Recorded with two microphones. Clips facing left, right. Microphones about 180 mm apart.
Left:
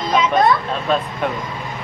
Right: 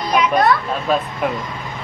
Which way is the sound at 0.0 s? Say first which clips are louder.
Even; 25° left (ahead or behind).